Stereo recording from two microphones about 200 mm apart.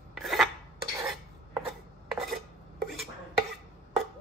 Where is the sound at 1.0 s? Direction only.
Centre (ahead or behind).